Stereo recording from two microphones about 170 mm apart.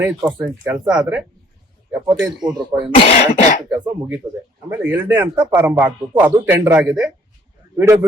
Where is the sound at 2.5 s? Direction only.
25° right (ahead or behind).